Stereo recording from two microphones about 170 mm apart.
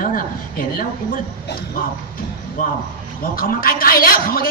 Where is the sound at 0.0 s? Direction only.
55° left (ahead or behind).